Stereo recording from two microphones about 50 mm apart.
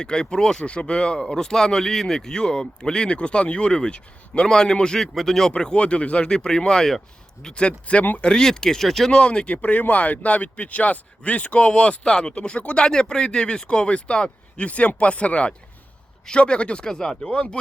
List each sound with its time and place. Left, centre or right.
0.0 s speech: centre
7.4 s a man's voice: left; by 9.1 s centre
9.1 s a man's voice: centre
9.6 s a man's voice: left